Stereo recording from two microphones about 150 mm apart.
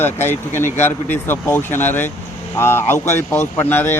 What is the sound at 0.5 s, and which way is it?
Speech, 50° left (ahead or behind).